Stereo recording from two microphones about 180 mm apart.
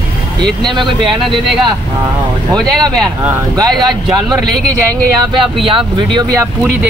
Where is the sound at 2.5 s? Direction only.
Centre (ahead or behind).